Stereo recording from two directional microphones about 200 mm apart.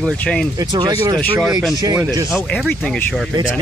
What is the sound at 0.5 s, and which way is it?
Speech, 20° right (ahead or behind).